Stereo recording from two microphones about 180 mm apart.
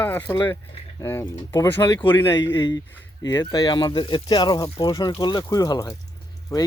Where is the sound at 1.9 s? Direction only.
30° left (ahead or behind).